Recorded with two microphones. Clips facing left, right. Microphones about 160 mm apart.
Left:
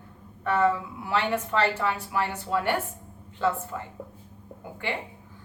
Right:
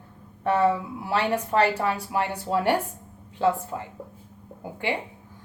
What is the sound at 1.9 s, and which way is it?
Speech, 10° right (ahead or behind).